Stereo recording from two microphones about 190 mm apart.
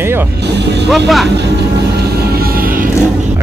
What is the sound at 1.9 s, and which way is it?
Vehicle, 50° right (ahead or behind).